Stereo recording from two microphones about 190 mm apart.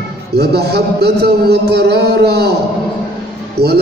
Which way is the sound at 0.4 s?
60° right (ahead or behind).